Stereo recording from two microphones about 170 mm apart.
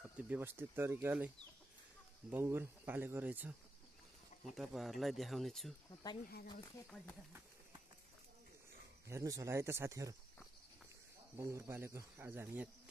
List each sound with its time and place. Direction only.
0.2 s speech: 10° right (ahead or behind)
4.6 s speech: centre (ahead or behind)
9.0 s speech: 20° right (ahead or behind)
11.3 s speech: 15° right (ahead or behind)